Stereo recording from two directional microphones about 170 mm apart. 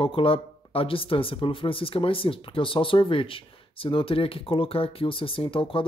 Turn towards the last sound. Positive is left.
turn(degrees=30)  # may be behind; listen again after turning